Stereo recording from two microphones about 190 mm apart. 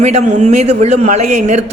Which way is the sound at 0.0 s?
35° right (ahead or behind).